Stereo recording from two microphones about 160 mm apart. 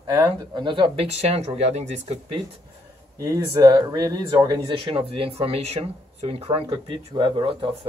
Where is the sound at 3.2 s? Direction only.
20° right (ahead or behind).